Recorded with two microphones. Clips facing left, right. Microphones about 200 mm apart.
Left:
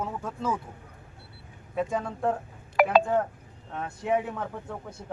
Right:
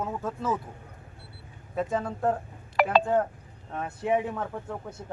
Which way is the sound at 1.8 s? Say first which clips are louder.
Even; centre (ahead or behind).